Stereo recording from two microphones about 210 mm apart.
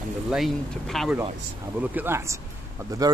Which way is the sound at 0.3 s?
Centre (ahead or behind).